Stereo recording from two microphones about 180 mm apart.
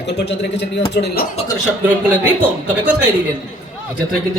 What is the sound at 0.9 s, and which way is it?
Speech, 65° left (ahead or behind).